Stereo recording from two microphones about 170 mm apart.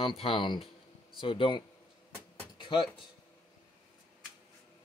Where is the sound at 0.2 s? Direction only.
30° left (ahead or behind).